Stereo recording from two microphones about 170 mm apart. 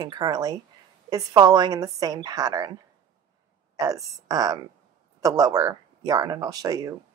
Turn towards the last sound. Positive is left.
turn(degrees=-20)  # may be behind; listen again after turning